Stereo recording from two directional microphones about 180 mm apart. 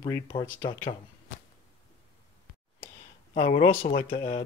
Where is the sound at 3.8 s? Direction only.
50° left (ahead or behind).